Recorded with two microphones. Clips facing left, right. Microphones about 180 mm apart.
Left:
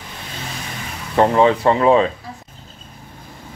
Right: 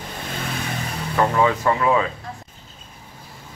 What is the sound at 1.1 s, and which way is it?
Speech, 30° left (ahead or behind).